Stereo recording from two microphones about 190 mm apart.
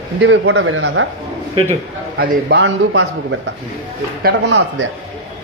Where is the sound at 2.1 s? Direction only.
70° right (ahead or behind).